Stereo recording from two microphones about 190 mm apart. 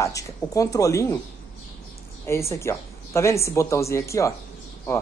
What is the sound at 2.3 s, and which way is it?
Speech, 15° left (ahead or behind).